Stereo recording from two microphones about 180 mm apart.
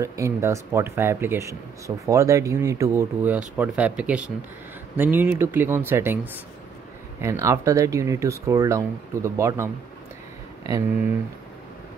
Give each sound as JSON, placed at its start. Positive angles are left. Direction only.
{"t": 0.0, "sound": "speech", "side_deg": -15}
{"t": 7.2, "sound": "speech", "side_deg": -15}